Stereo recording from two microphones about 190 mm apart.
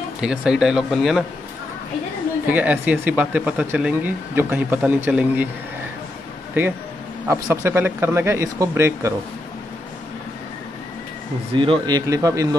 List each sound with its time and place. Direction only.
0.2 s speech: 5° right (ahead or behind)
2.4 s speech: 10° right (ahead or behind)
7.2 s speech: 15° right (ahead or behind)
11.5 s speech: 25° right (ahead or behind)